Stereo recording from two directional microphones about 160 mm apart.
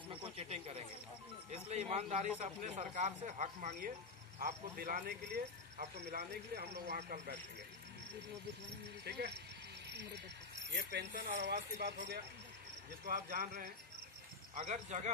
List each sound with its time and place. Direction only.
0.1 s a sound: 40° right (ahead or behind)
1.5 s a man's voice: 45° right (ahead or behind)
4.4 s speech: 65° right (ahead or behind)
9.0 s speech: 90° right
10.8 s speech: 90° right
11.1 s speech: 55° right (ahead or behind)
11.4 s speech: 85° right
13.0 s speech: 60° right (ahead or behind)
14.5 s a man's voice: 45° right (ahead or behind)